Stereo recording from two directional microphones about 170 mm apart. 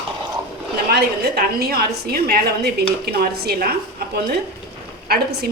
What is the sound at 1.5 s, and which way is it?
Speech, 65° right (ahead or behind).